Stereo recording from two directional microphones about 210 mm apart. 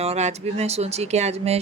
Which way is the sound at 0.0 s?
30° right (ahead or behind).